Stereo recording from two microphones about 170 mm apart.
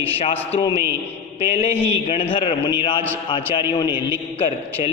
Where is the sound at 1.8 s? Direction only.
35° left (ahead or behind).